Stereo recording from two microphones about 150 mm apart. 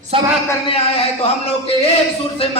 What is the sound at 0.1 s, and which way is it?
Speech, 40° right (ahead or behind).